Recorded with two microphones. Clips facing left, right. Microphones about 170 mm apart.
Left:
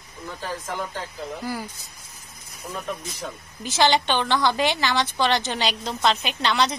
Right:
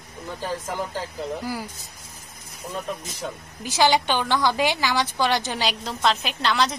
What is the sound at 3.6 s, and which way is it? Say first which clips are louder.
A woman's voice: even; 10° right (ahead or behind).